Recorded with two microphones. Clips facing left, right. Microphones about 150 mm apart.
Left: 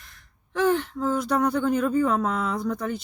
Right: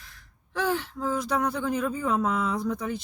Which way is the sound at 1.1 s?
60° left (ahead or behind).